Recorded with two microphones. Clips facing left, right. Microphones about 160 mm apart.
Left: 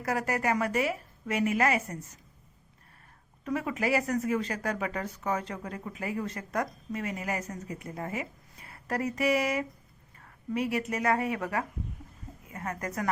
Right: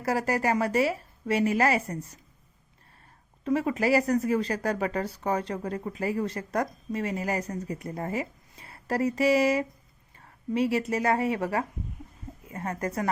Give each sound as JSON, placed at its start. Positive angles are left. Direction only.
{"t": 0.0, "sound": "speech", "side_deg": -30}
{"t": 3.4, "sound": "a woman's voice", "side_deg": -30}